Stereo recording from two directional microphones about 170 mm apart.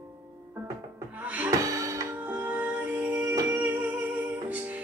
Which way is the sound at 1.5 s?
20° right (ahead or behind).